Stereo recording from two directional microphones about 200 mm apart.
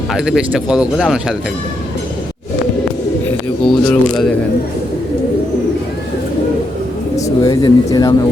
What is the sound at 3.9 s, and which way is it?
Speech, 5° left (ahead or behind).